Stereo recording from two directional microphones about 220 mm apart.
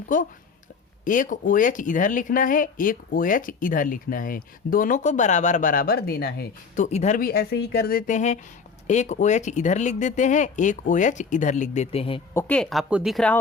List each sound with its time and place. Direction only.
0.1 s speech: 35° left (ahead or behind)
6.8 s speech: 30° left (ahead or behind)
12.3 s speech: 10° left (ahead or behind)